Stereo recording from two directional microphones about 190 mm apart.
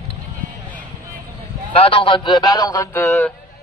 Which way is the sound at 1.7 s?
30° left (ahead or behind).